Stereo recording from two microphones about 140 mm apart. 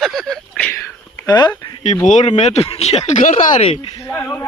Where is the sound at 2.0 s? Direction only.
55° left (ahead or behind).